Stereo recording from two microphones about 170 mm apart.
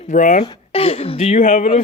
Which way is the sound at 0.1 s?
50° left (ahead or behind).